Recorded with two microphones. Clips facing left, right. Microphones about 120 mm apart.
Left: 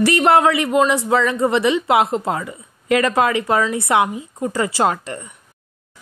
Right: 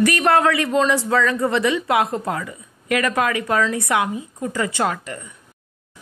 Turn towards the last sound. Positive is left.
turn(degrees=30)  # may be behind; listen again after turning